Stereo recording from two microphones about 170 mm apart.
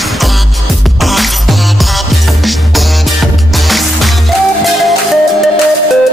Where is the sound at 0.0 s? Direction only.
Centre (ahead or behind).